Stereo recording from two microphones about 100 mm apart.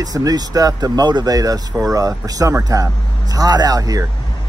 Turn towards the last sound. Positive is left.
turn(degrees=-35)  # may be behind; listen again after turning